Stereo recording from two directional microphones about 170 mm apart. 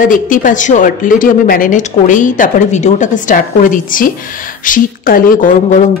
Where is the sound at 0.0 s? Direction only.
50° left (ahead or behind).